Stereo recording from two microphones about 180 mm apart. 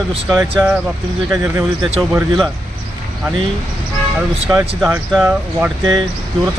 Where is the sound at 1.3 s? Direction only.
15° right (ahead or behind).